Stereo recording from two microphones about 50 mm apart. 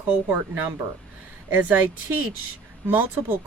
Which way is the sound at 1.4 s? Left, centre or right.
Right.